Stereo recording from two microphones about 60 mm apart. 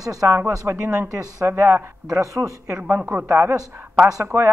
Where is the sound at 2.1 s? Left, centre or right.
Right.